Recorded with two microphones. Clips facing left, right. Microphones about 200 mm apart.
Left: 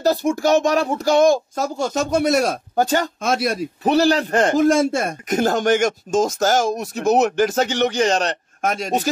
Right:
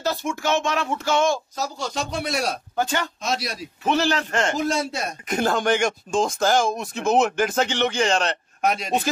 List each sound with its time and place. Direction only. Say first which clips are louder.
0.0 s speech: left 7 dB; 35° left (ahead or behind)
3.2 s speech: left 7 dB; 50° left (ahead or behind)
3.8 s speech: left 5 dB; 35° left (ahead or behind)
4.6 s speech: left 8 dB; 50° left (ahead or behind)